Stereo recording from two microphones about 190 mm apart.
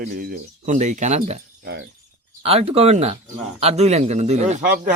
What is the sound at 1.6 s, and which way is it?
Speech, 60° right (ahead or behind).